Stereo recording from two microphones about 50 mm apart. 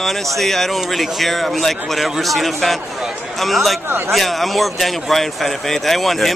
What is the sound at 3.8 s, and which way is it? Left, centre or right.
Speech, right.